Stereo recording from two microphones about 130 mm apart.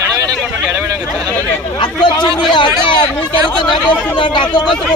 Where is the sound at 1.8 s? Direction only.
35° left (ahead or behind).